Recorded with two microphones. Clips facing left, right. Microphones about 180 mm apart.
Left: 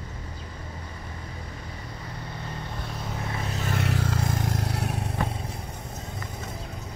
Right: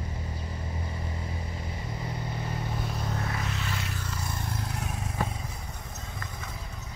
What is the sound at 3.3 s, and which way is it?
Vehicle, 35° left (ahead or behind).